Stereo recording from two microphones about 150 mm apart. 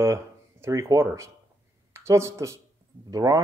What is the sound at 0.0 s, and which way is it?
Speech, 20° right (ahead or behind).